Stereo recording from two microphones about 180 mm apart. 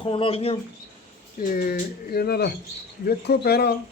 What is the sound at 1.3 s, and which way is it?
Speech, 50° left (ahead or behind).